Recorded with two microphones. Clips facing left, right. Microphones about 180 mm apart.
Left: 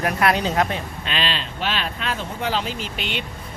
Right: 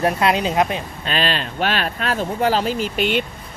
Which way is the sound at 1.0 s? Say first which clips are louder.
Right 7 dB; 45° right (ahead or behind).